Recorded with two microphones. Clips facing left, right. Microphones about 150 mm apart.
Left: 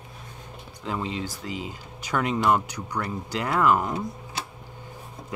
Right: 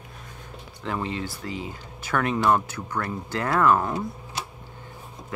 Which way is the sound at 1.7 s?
15° left (ahead or behind).